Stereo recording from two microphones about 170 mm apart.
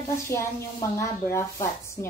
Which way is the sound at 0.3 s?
15° left (ahead or behind).